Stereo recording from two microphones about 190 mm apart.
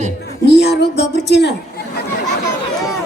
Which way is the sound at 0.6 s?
60° left (ahead or behind).